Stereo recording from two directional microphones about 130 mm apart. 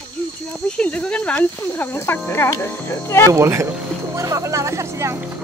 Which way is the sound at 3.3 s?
20° right (ahead or behind).